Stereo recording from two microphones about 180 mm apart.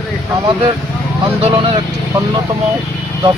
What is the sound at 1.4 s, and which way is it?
Speech, 30° right (ahead or behind).